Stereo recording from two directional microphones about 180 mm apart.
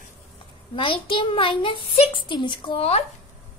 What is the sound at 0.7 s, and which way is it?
A child's voice, 30° left (ahead or behind).